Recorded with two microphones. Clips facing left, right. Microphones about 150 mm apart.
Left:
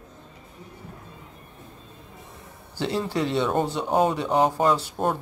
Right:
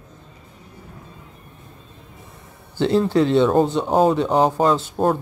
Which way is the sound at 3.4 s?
30° right (ahead or behind).